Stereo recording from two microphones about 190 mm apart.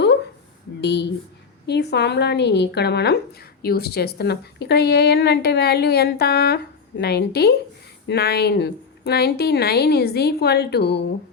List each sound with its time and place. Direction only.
0.8 s a woman's voice: 65° left (ahead or behind)